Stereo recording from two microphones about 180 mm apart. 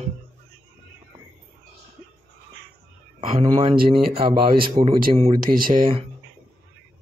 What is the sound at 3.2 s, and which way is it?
Speech, 40° right (ahead or behind).